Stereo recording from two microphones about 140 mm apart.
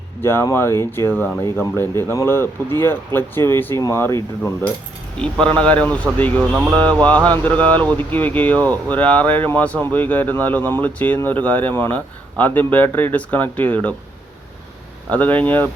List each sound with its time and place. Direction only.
0.2 s speech: 15° left (ahead or behind)
15.1 s speech: 10° left (ahead or behind)